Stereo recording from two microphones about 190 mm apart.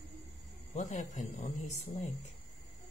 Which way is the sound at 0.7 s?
40° left (ahead or behind).